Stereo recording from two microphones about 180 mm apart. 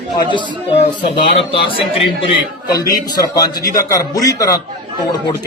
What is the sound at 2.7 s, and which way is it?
A man's voice, 20° left (ahead or behind).